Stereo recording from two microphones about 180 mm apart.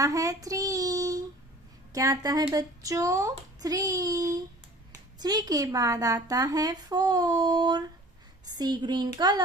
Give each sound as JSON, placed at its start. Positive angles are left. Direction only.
{"t": 0.0, "sound": "child singing", "side_deg": -20}
{"t": 1.9, "sound": "speech", "side_deg": -20}